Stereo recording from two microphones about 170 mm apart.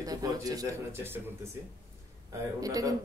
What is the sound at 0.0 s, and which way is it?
Speech, 20° right (ahead or behind).